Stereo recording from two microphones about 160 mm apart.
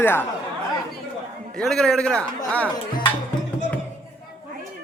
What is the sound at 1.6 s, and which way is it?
A man's voice, 5° left (ahead or behind).